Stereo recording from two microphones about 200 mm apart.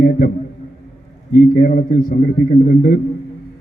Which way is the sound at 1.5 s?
45° left (ahead or behind).